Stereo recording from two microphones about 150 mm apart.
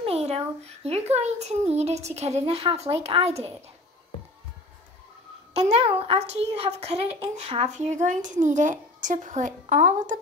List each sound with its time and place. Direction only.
0.0 s a sound: 45° right (ahead or behind)
0.8 s a child's voice: 45° right (ahead or behind)
5.5 s a child's voice: 45° right (ahead or behind)